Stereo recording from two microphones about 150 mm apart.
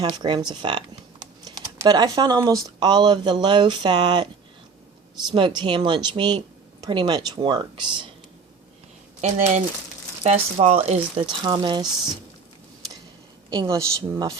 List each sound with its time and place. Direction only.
0.0 s a woman's voice: 30° right (ahead or behind)
5.3 s a woman's voice: 30° right (ahead or behind)
10.2 s speech: 45° right (ahead or behind)
13.5 s a woman's voice: 25° right (ahead or behind)